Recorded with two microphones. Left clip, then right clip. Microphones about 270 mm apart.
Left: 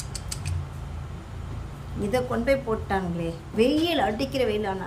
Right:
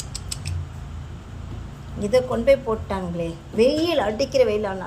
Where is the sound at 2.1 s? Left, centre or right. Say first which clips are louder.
Right 6 dB; centre.